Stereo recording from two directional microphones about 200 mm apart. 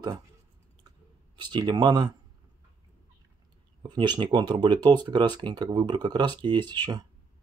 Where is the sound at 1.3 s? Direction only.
20° right (ahead or behind).